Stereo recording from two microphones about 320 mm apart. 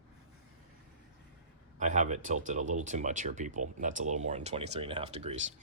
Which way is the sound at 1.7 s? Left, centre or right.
Right.